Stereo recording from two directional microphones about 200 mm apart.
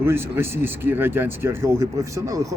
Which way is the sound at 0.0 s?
10° right (ahead or behind).